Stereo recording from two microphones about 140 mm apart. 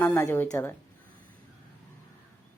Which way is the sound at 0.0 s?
20° left (ahead or behind).